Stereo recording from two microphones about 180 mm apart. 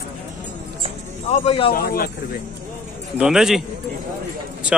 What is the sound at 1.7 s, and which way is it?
Speech, 55° left (ahead or behind).